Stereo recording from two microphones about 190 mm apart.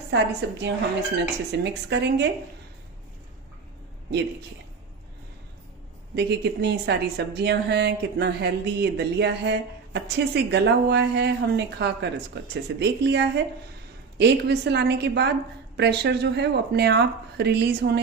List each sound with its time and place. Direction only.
0.1 s a woman's voice: 65° right (ahead or behind)
6.1 s a woman's voice: 60° right (ahead or behind)